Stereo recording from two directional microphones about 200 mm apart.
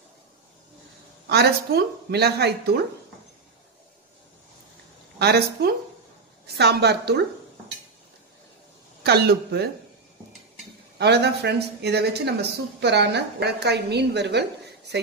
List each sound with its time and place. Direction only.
1.2 s a woman's voice: 55° right (ahead or behind)
5.2 s speech: 55° right (ahead or behind)
9.0 s a woman's voice: 55° right (ahead or behind)
11.0 s speech: 55° right (ahead or behind)